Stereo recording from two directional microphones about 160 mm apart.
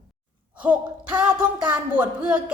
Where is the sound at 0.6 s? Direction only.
10° right (ahead or behind).